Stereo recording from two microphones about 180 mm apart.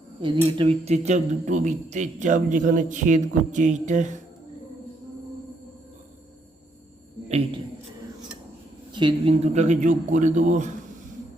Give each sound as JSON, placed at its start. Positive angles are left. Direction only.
{"t": 0.4, "sound": "speech", "side_deg": -35}
{"t": 8.9, "sound": "speech", "side_deg": -25}